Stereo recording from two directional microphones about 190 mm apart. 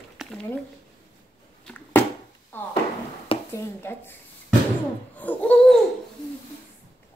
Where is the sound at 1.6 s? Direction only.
5° left (ahead or behind).